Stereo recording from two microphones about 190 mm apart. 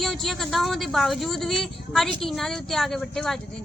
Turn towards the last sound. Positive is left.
turn(degrees=0)  # may be behind; listen again after turning